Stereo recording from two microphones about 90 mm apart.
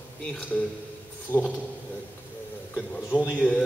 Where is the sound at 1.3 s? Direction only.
35° left (ahead or behind).